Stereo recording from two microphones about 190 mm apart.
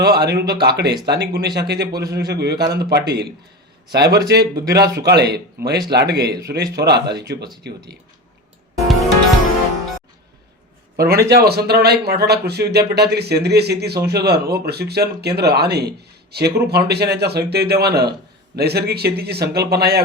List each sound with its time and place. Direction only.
0.0 s a man's voice: 55° right (ahead or behind)
10.9 s a man's voice: 55° right (ahead or behind)